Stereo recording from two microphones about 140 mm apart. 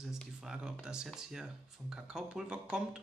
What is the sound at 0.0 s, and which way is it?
Speech, 5° right (ahead or behind).